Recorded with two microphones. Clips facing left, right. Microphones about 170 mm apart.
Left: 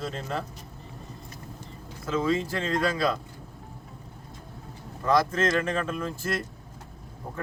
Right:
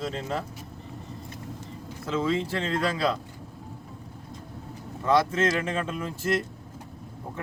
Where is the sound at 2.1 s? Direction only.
25° right (ahead or behind).